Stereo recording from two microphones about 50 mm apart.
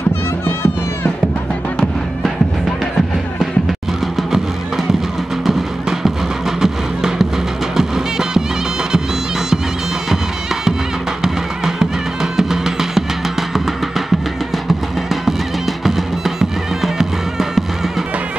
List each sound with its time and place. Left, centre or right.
0.5 s music: left
4.2 s music: centre
10.0 s music: centre
14.7 s music: centre